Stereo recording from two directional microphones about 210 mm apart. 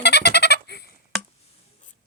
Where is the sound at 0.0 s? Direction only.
55° left (ahead or behind).